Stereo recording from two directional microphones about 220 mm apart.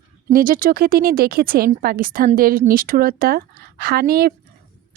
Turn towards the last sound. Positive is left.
turn(degrees=-45)  # may be behind; listen again after turning